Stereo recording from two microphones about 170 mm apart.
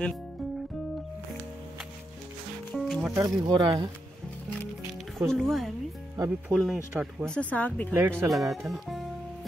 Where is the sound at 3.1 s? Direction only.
20° right (ahead or behind).